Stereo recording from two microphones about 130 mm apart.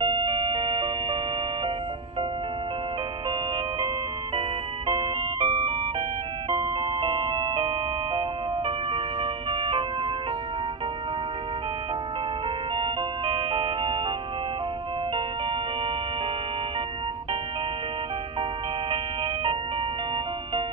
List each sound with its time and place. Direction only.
0.0 s music: 40° right (ahead or behind)
4.4 s music: 40° right (ahead or behind)
12.7 s music: 40° right (ahead or behind)